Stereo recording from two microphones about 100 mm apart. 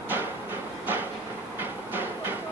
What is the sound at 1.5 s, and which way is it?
Train, 20° right (ahead or behind).